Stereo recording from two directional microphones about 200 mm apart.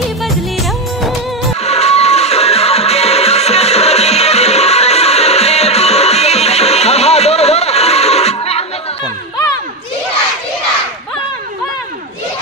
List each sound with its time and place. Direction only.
1.6 s music: 35° left (ahead or behind)